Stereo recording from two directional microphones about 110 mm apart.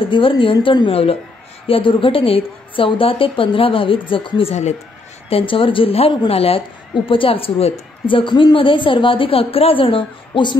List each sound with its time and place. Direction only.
0.0 s a woman's voice: 50° left (ahead or behind); by 4.7 s 80° left
5.5 s a woman's voice: 55° left (ahead or behind)